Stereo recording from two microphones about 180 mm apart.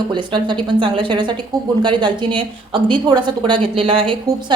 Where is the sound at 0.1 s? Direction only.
25° right (ahead or behind).